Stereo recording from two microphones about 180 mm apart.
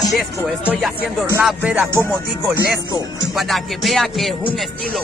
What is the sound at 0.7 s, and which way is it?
Music, centre (ahead or behind).